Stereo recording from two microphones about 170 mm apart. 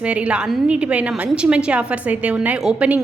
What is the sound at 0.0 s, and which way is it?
A woman's voice, 5° right (ahead or behind).